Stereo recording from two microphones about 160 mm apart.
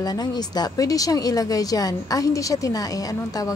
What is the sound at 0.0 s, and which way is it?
Speech, 25° left (ahead or behind).